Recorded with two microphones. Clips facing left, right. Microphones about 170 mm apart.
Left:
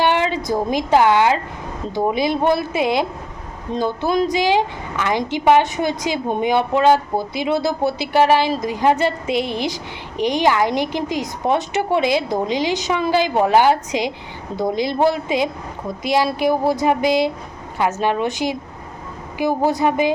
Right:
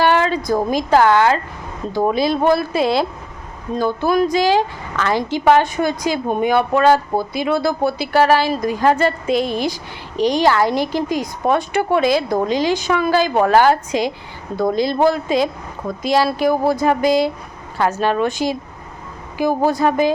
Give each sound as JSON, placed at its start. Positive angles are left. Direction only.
{"t": 0.0, "sound": "a woman's voice", "side_deg": 15}